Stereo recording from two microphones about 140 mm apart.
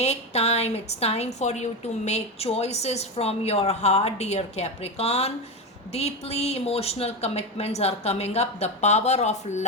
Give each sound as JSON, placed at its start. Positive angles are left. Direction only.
{"t": 0.0, "sound": "a woman's voice", "side_deg": 50}